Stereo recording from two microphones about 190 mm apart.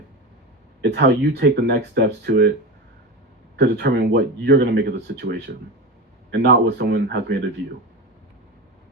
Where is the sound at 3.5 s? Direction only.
60° right (ahead or behind).